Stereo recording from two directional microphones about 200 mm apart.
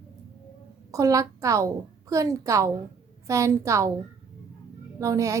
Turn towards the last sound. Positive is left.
turn(degrees=-15)  # may be behind; listen again after turning